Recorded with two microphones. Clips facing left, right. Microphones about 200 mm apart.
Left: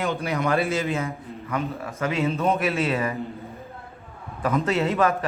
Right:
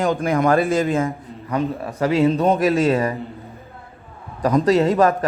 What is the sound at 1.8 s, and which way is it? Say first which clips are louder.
A man's voice: right 9 dB; 35° right (ahead or behind).